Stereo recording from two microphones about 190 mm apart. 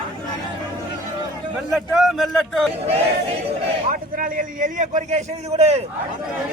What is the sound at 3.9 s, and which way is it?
A man's voice, 45° right (ahead or behind).